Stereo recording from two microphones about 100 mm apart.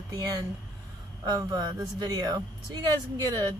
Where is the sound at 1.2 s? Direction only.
40° right (ahead or behind).